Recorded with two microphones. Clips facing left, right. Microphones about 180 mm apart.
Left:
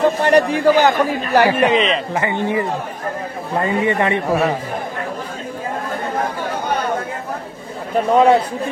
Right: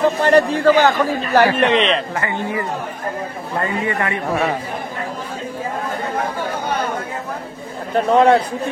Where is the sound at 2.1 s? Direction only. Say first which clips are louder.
Left 3 dB; 20° left (ahead or behind).